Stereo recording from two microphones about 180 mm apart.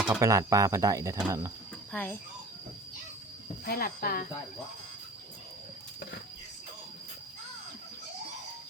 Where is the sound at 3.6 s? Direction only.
55° left (ahead or behind).